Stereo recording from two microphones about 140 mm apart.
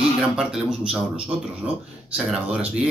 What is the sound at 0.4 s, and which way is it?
Speech, 5° right (ahead or behind).